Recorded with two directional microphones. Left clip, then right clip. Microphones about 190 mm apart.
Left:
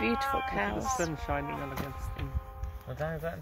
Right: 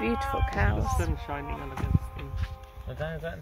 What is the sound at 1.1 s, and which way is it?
Speech, 55° left (ahead or behind).